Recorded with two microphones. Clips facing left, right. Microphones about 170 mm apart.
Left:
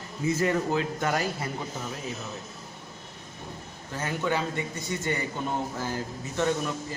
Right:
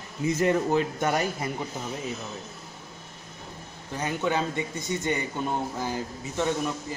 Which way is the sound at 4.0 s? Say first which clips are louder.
Right 1 dB; 20° right (ahead or behind).